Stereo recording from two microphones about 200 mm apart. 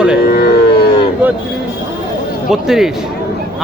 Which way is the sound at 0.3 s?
50° left (ahead or behind).